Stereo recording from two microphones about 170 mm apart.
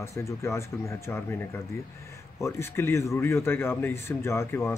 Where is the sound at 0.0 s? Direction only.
15° left (ahead or behind).